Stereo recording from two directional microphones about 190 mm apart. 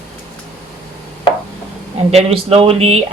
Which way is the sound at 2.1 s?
30° right (ahead or behind).